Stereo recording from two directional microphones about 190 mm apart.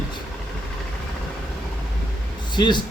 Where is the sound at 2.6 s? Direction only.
25° left (ahead or behind).